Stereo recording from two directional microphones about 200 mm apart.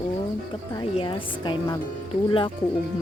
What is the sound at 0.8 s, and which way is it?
Speech, 25° left (ahead or behind).